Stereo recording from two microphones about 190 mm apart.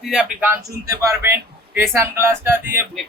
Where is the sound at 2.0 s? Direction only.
15° right (ahead or behind).